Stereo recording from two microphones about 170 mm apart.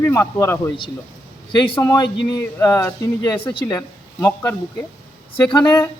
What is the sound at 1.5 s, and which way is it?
Speech, 30° left (ahead or behind).